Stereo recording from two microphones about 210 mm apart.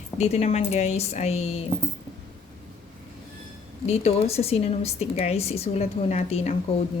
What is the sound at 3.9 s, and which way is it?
A woman's voice, 30° left (ahead or behind).